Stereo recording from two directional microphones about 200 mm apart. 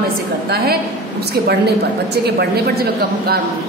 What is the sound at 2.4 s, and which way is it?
Speech, 50° right (ahead or behind).